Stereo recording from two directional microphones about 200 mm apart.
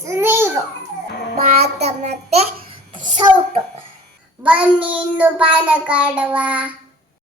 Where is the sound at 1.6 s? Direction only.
35° right (ahead or behind).